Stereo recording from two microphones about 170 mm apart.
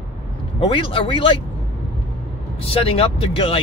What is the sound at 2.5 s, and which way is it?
Speech, 35° left (ahead or behind).